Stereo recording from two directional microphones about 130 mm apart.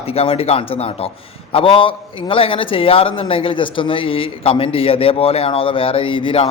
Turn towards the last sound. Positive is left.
turn(degrees=45)  # may be behind; listen again after turning